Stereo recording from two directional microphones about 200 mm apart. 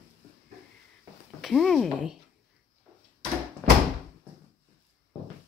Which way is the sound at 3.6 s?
5° left (ahead or behind).